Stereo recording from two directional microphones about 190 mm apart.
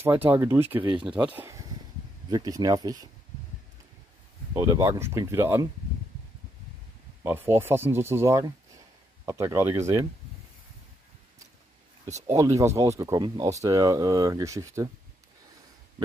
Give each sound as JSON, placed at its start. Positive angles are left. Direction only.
{"t": 0.0, "sound": "speech", "side_deg": -10}
{"t": 4.6, "sound": "speech", "side_deg": -15}
{"t": 7.2, "sound": "speech", "side_deg": -10}
{"t": 12.3, "sound": "speech", "side_deg": -15}